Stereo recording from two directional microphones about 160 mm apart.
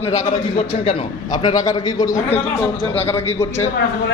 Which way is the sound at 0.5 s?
35° left (ahead or behind).